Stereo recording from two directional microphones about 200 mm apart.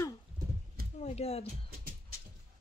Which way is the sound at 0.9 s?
30° left (ahead or behind).